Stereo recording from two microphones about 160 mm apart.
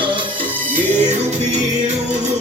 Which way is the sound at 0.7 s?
45° right (ahead or behind).